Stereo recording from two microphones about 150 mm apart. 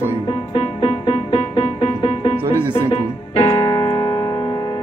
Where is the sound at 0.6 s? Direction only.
40° left (ahead or behind).